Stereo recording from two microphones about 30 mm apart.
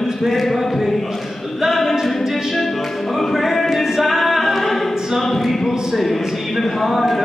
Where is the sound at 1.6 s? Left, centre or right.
Centre.